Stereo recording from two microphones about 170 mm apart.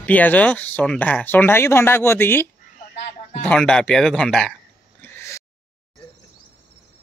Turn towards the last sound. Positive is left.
turn(degrees=15)  # may be behind; listen again after turning